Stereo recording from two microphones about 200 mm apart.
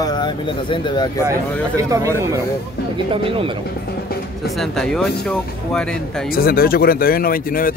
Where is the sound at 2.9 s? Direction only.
25° right (ahead or behind).